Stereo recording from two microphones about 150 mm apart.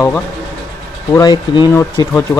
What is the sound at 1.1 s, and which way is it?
Speech, 25° left (ahead or behind).